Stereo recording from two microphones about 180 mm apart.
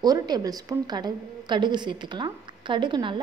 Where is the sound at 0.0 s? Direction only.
20° right (ahead or behind).